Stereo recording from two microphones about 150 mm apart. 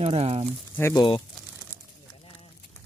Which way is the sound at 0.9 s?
30° left (ahead or behind).